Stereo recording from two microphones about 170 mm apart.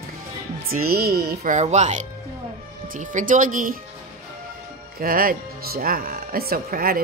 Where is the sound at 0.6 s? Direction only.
60° right (ahead or behind).